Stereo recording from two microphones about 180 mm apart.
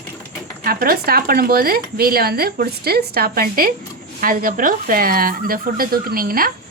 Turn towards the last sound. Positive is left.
turn(degrees=-55)  # may be behind; listen again after turning